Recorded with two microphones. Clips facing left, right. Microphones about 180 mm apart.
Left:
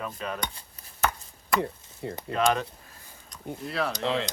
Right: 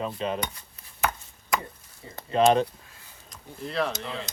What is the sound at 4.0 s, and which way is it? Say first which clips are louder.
Speech: left 8 dB; 90° left.